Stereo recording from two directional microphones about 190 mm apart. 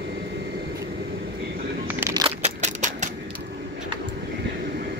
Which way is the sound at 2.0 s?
15° right (ahead or behind).